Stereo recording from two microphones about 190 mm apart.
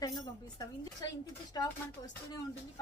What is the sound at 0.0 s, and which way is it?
A woman's voice, 20° left (ahead or behind).